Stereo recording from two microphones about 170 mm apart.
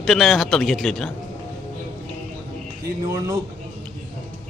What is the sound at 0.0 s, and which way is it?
Speech, centre (ahead or behind).